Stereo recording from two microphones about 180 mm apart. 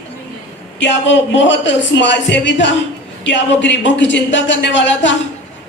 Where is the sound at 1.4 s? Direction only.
85° left.